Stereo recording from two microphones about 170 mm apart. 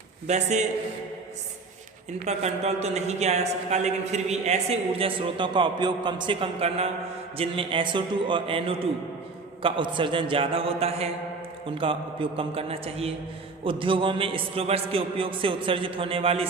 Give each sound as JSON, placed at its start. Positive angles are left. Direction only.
{"t": 0.3, "sound": "a man's voice", "side_deg": -40}
{"t": 2.2, "sound": "a woman's voice", "side_deg": -40}